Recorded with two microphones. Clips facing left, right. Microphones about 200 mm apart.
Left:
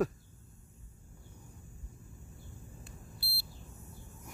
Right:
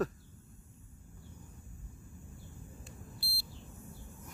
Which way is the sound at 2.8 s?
60° left (ahead or behind).